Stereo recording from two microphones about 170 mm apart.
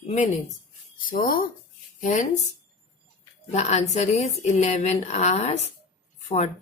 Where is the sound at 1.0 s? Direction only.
55° left (ahead or behind).